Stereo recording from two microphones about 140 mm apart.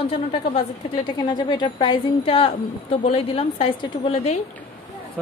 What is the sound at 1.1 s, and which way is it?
A woman's voice, 35° left (ahead or behind).